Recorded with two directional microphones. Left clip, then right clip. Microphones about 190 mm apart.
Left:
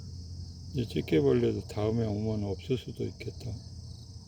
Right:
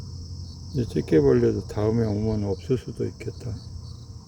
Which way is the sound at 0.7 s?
20° left (ahead or behind).